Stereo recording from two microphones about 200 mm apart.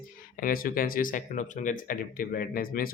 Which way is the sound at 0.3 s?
45° left (ahead or behind).